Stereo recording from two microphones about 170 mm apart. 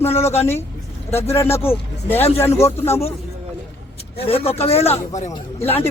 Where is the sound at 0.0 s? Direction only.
15° left (ahead or behind).